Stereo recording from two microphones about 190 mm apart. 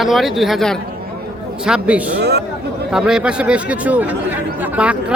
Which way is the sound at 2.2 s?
60° right (ahead or behind).